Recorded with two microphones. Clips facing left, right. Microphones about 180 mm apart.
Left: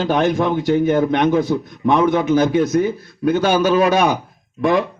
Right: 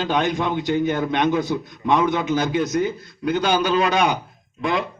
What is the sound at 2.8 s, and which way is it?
Speech, 30° left (ahead or behind).